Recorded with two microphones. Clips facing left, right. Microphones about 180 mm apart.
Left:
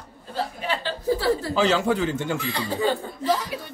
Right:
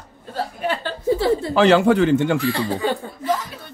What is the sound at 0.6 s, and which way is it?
Chuckle, 50° right (ahead or behind).